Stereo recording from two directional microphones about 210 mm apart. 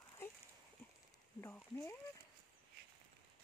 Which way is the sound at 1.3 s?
10° left (ahead or behind).